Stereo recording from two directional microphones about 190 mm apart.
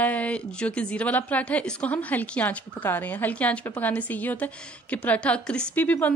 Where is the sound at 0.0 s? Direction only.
5° left (ahead or behind).